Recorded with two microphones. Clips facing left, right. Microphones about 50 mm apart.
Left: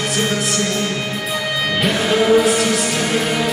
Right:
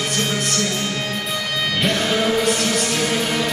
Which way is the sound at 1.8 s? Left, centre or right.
Centre.